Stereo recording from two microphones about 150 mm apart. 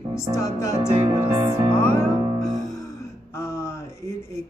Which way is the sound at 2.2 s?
35° right (ahead or behind).